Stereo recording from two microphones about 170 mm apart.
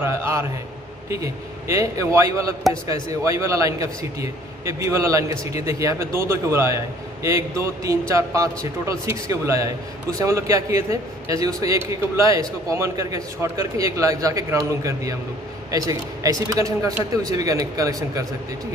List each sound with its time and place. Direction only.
0.0 s a man's voice: 15° right (ahead or behind)